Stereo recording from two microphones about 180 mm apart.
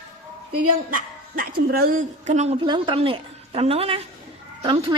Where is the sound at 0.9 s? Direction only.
55° right (ahead or behind); by 4.9 s 30° right (ahead or behind).